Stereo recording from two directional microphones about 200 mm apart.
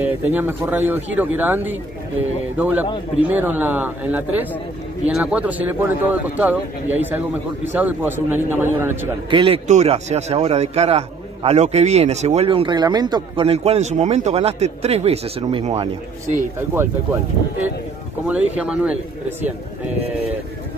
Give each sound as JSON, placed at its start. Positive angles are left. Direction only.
{"t": 0.0, "sound": "speech", "side_deg": -10}
{"t": 9.3, "sound": "a man's voice", "side_deg": -25}
{"t": 18.6, "sound": "speech", "side_deg": -5}